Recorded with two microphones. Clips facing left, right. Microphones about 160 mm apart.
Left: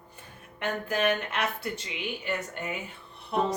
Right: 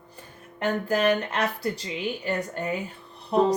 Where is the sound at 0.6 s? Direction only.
35° right (ahead or behind).